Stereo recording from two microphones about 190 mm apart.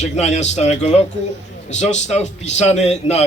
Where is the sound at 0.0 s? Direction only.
35° left (ahead or behind).